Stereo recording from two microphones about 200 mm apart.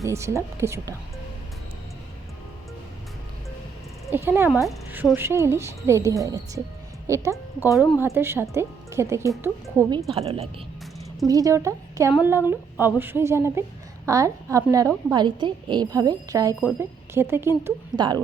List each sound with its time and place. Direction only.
0.0 s a woman's voice: 15° right (ahead or behind)
4.1 s a woman's voice: 10° right (ahead or behind)
10.2 s speech: 30° right (ahead or behind)
11.3 s a woman's voice: 15° right (ahead or behind)